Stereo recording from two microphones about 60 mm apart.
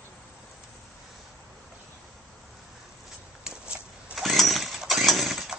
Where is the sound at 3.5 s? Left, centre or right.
Centre.